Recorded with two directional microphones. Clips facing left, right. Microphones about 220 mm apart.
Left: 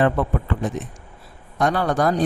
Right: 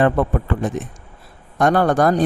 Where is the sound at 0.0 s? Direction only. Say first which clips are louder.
Right 3 dB; 50° right (ahead or behind).